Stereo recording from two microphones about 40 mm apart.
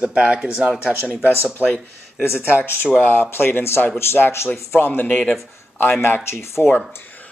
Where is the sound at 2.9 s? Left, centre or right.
Left.